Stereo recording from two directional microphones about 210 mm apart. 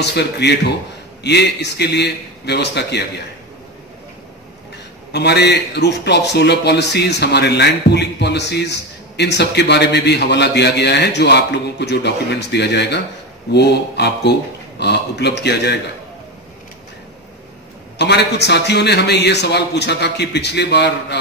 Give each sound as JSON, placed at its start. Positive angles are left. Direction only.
{"t": 0.0, "sound": "a man's voice", "side_deg": 55}
{"t": 5.1, "sound": "a man's voice", "side_deg": 55}
{"t": 17.9, "sound": "a man's voice", "side_deg": 55}